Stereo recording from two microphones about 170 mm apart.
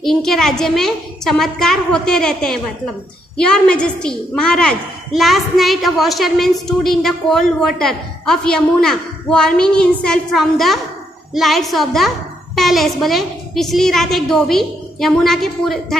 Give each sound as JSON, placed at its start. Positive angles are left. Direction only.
{"t": 0.0, "sound": "a woman's voice", "side_deg": 0}